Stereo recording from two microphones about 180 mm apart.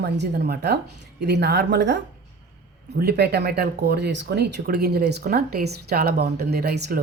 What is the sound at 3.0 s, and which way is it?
Speech, 60° right (ahead or behind).